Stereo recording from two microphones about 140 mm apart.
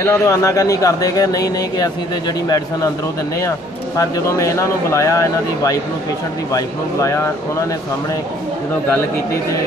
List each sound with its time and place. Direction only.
0.0 s speech: 20° left (ahead or behind)
8.8 s speech: 20° left (ahead or behind)